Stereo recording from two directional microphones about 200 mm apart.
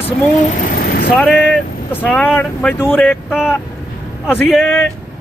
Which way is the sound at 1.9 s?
10° left (ahead or behind).